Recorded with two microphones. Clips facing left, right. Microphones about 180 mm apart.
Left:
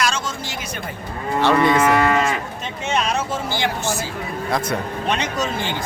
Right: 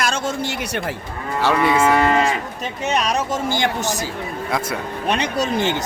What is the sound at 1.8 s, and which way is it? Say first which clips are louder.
Cattle: right 1 dB; 30° right (ahead or behind).